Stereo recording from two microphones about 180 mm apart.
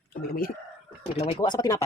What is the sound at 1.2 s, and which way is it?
Speech, 30° left (ahead or behind).